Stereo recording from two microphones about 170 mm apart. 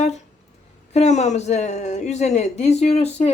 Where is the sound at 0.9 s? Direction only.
40° left (ahead or behind).